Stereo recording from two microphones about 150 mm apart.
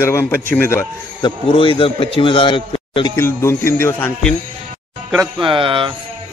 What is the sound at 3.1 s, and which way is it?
Speech, 15° left (ahead or behind).